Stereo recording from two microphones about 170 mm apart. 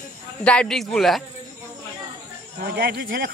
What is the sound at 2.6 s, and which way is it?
Speech, 65° right (ahead or behind).